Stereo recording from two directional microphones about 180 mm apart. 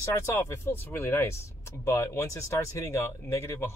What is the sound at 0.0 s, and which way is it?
Speech, 15° left (ahead or behind).